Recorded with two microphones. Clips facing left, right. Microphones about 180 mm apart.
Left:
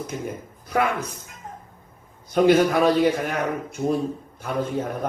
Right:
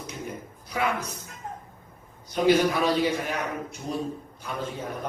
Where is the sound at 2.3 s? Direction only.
50° left (ahead or behind).